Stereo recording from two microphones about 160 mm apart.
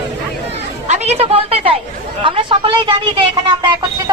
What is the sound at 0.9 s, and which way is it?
A woman's voice, 40° right (ahead or behind).